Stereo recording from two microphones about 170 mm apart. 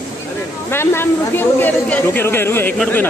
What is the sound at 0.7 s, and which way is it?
A woman's voice, 15° left (ahead or behind).